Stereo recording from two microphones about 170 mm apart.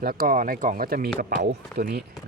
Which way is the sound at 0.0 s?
55° right (ahead or behind).